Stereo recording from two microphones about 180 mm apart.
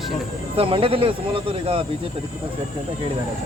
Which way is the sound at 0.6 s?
30° right (ahead or behind).